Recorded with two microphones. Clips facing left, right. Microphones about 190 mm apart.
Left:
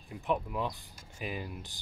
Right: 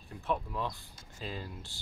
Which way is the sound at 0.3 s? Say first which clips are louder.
Left 2 dB; 15° left (ahead or behind).